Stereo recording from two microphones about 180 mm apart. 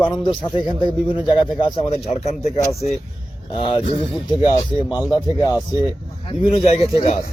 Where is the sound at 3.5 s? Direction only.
30° left (ahead or behind).